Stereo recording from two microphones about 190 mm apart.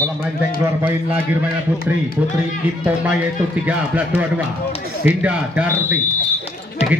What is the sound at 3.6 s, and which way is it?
A man's voice, 10° right (ahead or behind).